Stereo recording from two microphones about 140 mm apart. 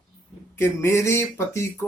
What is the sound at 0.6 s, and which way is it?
Speech, 20° left (ahead or behind).